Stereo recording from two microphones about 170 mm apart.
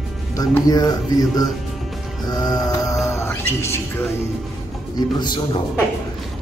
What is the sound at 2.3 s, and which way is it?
Music, 25° left (ahead or behind).